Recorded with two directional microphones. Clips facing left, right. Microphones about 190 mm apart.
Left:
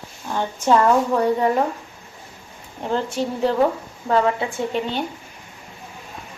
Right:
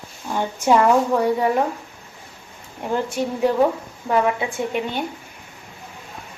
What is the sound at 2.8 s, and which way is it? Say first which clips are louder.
Speech: even; 10° right (ahead or behind).